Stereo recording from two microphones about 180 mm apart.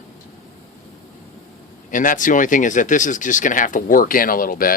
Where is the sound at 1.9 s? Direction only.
45° left (ahead or behind).